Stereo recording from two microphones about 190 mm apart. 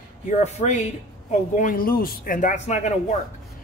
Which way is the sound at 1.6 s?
50° left (ahead or behind).